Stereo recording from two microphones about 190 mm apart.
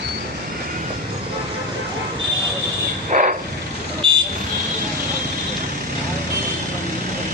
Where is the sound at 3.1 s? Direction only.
45° right (ahead or behind).